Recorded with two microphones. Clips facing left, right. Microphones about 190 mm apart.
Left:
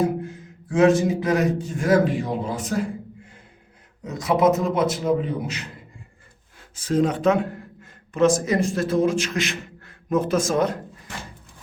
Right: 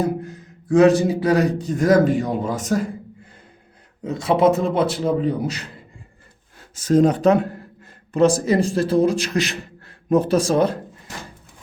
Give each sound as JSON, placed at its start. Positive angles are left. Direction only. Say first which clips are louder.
{"t": 0.7, "sound": "a man's voice", "louder": "right 3 dB", "side_deg": -35}
{"t": 4.0, "sound": "a man's voice", "louder": "right 2 dB", "side_deg": -30}
{"t": 6.7, "sound": "a man's voice", "louder": "right 5 dB", "side_deg": -40}